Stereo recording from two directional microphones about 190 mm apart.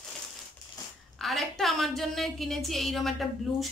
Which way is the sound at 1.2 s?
Centre (ahead or behind).